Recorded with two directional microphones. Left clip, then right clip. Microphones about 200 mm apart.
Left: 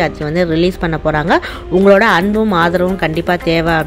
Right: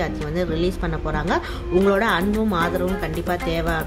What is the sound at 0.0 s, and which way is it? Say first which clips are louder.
Speech: left 10 dB; 30° left (ahead or behind).